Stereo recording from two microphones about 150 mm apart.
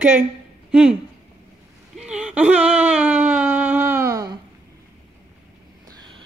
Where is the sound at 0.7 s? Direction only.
5° right (ahead or behind).